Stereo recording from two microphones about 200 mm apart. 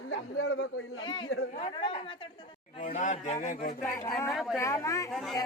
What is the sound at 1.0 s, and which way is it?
A woman's voice, 25° left (ahead or behind).